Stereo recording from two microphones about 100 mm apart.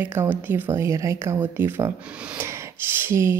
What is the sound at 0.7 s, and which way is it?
Speech, 30° right (ahead or behind).